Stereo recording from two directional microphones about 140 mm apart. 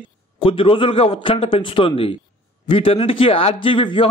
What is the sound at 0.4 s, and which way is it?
A man's voice, 40° left (ahead or behind).